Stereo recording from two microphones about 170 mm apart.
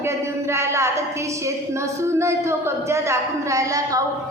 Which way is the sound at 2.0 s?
15° right (ahead or behind).